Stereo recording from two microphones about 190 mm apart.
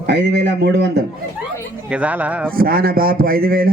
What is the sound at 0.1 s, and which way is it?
Speech, 65° right (ahead or behind).